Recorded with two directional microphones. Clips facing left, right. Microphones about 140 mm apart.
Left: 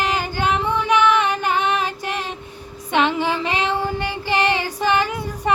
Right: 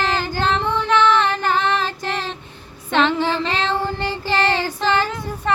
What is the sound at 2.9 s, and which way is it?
Child singing, 15° left (ahead or behind).